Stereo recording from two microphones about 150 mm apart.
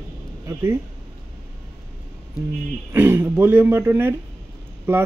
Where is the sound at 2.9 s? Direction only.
15° right (ahead or behind).